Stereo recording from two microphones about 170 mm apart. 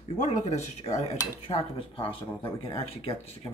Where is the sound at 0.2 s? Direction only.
45° left (ahead or behind).